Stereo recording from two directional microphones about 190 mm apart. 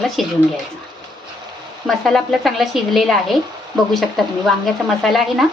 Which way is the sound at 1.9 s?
Centre (ahead or behind).